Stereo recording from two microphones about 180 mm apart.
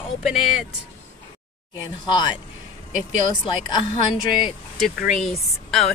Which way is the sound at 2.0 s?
25° left (ahead or behind).